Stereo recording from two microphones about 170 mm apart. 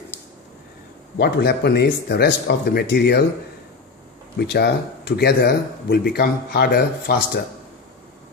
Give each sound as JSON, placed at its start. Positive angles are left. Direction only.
{"t": 1.2, "sound": "speech", "side_deg": 70}
{"t": 4.4, "sound": "speech", "side_deg": 70}